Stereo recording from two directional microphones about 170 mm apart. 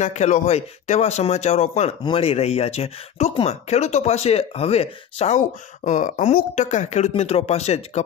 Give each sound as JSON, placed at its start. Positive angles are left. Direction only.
{"t": 0.0, "sound": "speech", "side_deg": 45}